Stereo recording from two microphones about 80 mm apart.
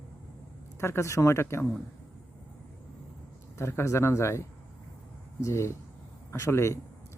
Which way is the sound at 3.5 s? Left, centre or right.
Left.